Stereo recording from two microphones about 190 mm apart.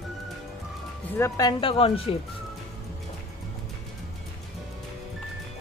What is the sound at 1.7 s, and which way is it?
Speech, 30° left (ahead or behind).